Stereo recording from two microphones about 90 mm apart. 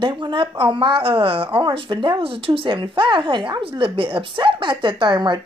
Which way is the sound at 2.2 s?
90° right.